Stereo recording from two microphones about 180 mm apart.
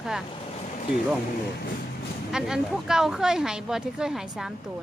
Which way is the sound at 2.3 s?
Centre (ahead or behind).